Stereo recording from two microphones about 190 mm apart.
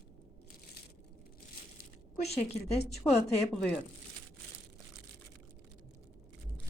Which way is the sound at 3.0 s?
10° left (ahead or behind).